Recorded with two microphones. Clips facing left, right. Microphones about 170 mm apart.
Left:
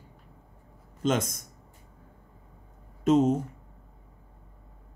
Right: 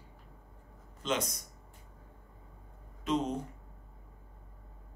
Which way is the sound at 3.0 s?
45° left (ahead or behind).